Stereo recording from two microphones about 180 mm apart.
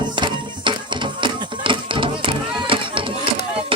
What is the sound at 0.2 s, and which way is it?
Music, 25° right (ahead or behind).